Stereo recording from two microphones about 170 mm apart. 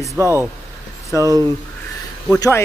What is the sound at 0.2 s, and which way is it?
Speech, 15° right (ahead or behind).